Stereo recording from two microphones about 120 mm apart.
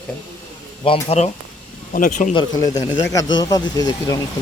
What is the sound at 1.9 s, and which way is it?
Speech, 90° left.